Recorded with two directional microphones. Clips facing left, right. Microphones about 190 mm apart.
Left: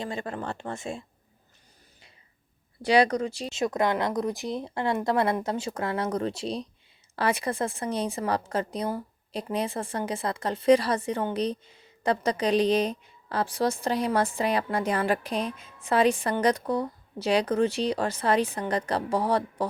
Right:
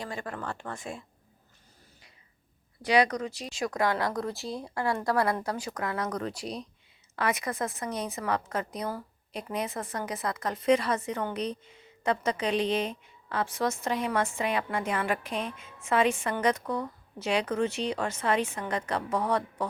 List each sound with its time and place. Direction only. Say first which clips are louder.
0.0 s speech: left 4 dB; 25° left (ahead or behind)
2.8 s a woman's voice: left 3 dB; 30° left (ahead or behind)